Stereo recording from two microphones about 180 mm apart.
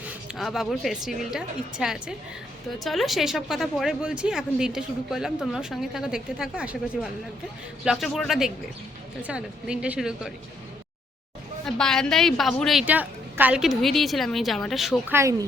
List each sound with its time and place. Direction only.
0.0 s speech: 5° right (ahead or behind)
11.6 s speech: 5° left (ahead or behind)
15.1 s speech: 15° right (ahead or behind)